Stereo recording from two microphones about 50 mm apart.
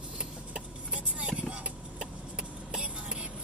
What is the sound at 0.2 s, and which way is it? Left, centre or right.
Vehicle, right.